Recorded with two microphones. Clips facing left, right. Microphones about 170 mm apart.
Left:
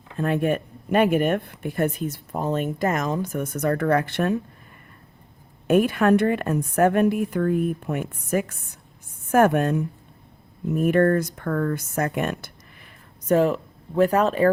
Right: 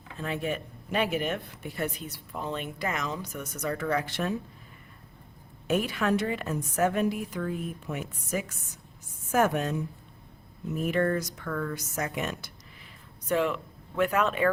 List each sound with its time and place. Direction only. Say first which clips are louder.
0.2 s speech: left 9 dB; 55° left (ahead or behind)
5.6 s a woman's voice: left 9 dB; 55° left (ahead or behind)
13.2 s speech: left 8 dB; 40° left (ahead or behind)